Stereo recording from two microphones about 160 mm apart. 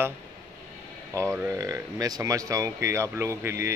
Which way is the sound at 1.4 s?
20° right (ahead or behind).